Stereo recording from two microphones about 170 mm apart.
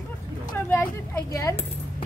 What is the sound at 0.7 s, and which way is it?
Speech, 15° left (ahead or behind).